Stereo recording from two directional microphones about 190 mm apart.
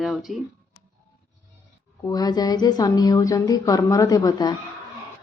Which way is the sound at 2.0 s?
20° left (ahead or behind).